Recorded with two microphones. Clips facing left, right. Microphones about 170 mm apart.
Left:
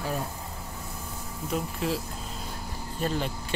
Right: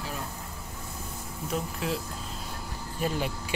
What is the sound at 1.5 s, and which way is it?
Speech, centre (ahead or behind).